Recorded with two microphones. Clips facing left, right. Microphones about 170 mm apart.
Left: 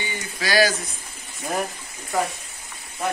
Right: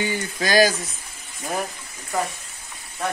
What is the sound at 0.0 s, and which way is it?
Speech, 45° right (ahead or behind).